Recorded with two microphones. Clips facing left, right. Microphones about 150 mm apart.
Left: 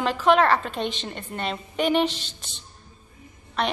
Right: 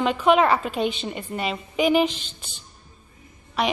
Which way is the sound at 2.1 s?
35° left (ahead or behind).